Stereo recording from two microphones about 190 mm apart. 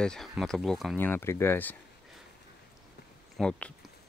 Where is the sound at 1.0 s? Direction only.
10° left (ahead or behind).